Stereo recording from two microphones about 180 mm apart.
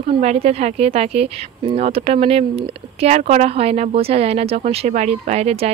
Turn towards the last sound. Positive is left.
turn(degrees=-35)  # may be behind; listen again after turning